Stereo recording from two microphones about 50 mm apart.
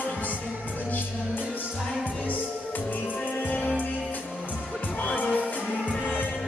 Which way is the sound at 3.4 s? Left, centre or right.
Left.